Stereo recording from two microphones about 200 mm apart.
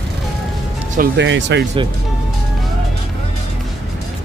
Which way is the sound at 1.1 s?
60° right (ahead or behind).